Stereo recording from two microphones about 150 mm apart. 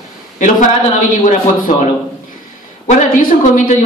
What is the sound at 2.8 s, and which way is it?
Speech, 50° left (ahead or behind).